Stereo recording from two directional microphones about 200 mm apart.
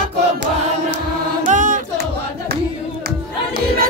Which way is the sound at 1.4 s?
40° right (ahead or behind).